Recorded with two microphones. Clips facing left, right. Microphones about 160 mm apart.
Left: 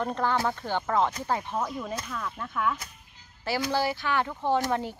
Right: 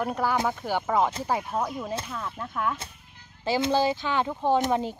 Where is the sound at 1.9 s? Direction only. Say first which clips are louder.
Right 1 dB; 25° right (ahead or behind).